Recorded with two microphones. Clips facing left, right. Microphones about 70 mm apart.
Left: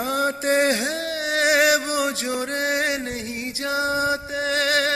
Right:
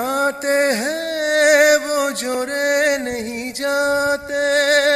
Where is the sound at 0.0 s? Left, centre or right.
Right.